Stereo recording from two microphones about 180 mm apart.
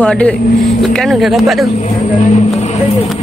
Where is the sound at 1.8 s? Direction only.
45° left (ahead or behind).